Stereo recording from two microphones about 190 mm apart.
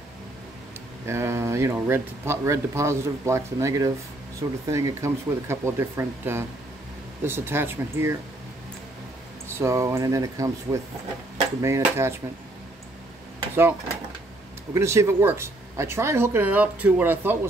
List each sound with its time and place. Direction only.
1.0 s speech: 15° right (ahead or behind)
9.5 s speech: 15° right (ahead or behind)
14.7 s speech: 15° right (ahead or behind)